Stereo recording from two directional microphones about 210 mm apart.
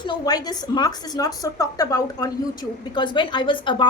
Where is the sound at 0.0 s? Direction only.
20° left (ahead or behind).